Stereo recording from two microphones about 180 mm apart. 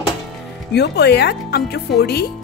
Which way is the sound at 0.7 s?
65° left (ahead or behind).